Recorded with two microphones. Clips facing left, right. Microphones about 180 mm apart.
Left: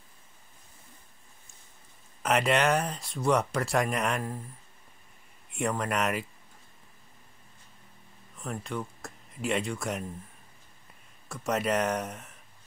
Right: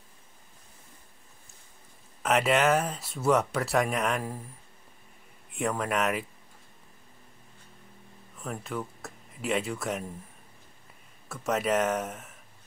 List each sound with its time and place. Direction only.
2.2 s speech: centre (ahead or behind)
5.5 s speech: centre (ahead or behind)
8.4 s speech: 5° right (ahead or behind)
11.2 s speech: centre (ahead or behind)